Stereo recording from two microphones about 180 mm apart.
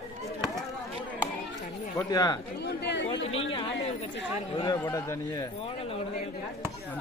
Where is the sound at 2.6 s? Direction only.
75° left (ahead or behind).